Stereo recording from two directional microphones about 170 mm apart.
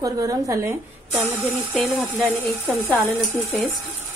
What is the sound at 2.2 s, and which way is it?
Speech, 10° left (ahead or behind).